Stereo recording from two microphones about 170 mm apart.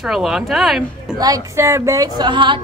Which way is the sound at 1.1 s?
20° right (ahead or behind).